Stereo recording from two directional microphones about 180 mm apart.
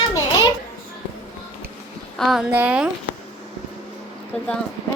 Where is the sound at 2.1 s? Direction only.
Centre (ahead or behind).